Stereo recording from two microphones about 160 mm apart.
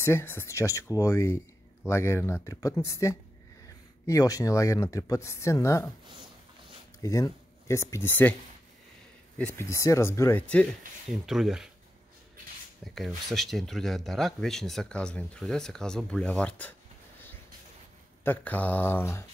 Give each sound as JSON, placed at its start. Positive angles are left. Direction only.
{"t": 0.0, "sound": "speech", "side_deg": 15}
{"t": 7.0, "sound": "speech", "side_deg": 20}
{"t": 9.6, "sound": "speech", "side_deg": 20}
{"t": 11.1, "sound": "speech", "side_deg": -5}
{"t": 12.9, "sound": "speech", "side_deg": 0}
{"t": 18.2, "sound": "speech", "side_deg": 10}